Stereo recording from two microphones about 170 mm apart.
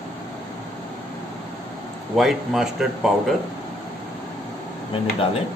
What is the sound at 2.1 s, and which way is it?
Speech, centre (ahead or behind).